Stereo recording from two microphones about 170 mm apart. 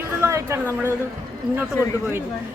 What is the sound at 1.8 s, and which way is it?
Speech, 15° left (ahead or behind).